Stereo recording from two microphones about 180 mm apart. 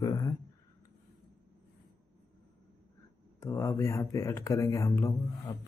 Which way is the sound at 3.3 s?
15° left (ahead or behind).